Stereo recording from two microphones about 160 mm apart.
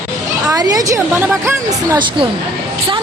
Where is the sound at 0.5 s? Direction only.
20° right (ahead or behind).